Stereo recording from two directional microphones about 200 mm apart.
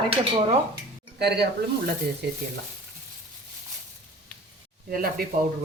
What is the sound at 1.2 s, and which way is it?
Speech, 55° right (ahead or behind).